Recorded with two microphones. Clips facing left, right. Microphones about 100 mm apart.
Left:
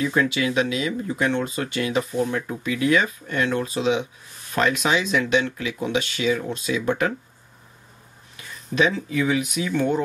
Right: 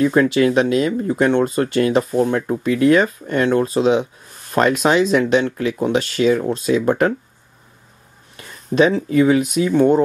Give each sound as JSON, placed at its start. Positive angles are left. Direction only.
{"t": 0.0, "sound": "speech", "side_deg": -40}
{"t": 8.4, "sound": "speech", "side_deg": -40}